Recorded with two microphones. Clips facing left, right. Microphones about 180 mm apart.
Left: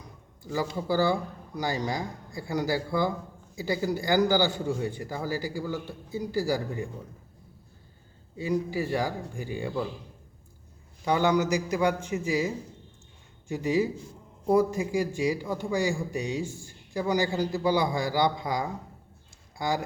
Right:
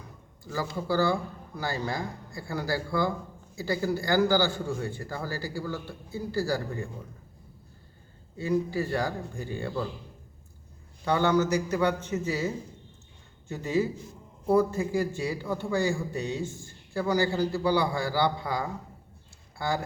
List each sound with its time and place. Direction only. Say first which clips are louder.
0.5 s a man's voice: left 1 dB; 15° left (ahead or behind)
8.4 s a man's voice: right 1 dB; 10° left (ahead or behind)
11.0 s a man's voice: even; 15° left (ahead or behind)